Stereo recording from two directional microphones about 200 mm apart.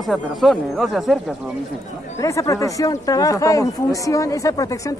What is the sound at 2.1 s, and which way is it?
Speech, 15° left (ahead or behind).